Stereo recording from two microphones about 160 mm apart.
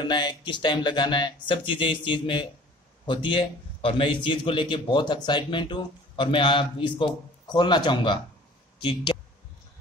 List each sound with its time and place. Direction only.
0.0 s a man's voice: 30° left (ahead or behind)